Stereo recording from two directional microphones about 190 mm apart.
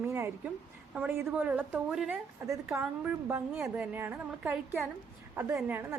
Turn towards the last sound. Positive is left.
turn(degrees=-10)  # may be behind; listen again after turning